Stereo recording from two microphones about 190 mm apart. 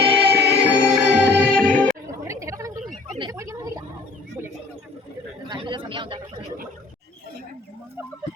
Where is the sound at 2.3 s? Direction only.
15° right (ahead or behind).